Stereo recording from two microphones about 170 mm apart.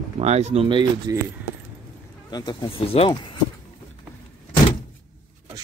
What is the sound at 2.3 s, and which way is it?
Speech, 25° left (ahead or behind).